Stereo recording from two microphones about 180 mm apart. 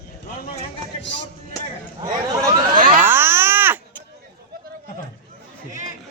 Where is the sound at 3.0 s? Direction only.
10° right (ahead or behind).